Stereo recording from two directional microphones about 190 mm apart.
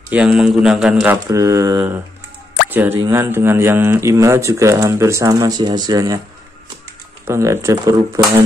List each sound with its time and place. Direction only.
0.1 s a man's voice: 5° right (ahead or behind)
7.2 s speech: 15° right (ahead or behind)